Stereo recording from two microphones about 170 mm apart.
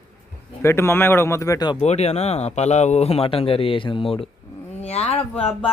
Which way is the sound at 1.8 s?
40° left (ahead or behind).